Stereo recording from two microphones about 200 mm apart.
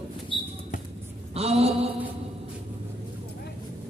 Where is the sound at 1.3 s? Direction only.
30° right (ahead or behind).